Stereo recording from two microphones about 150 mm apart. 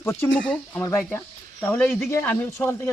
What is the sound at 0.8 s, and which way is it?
Speech, 20° left (ahead or behind).